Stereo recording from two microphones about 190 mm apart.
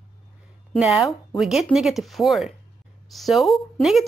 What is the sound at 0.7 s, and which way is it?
Speech, centre (ahead or behind).